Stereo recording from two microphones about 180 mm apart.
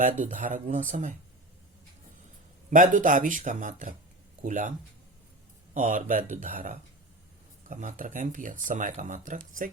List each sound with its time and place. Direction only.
0.0 s speech: 45° right (ahead or behind)
2.6 s speech: 45° right (ahead or behind)
5.7 s speech: 45° right (ahead or behind)